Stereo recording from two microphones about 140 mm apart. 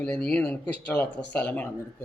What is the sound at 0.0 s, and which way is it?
Speech, 10° left (ahead or behind).